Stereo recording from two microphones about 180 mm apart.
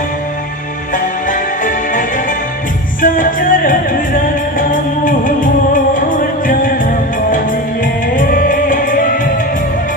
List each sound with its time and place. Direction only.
0.9 s music: 45° left (ahead or behind)